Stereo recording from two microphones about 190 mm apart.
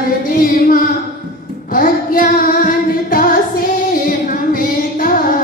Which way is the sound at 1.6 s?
45° left (ahead or behind).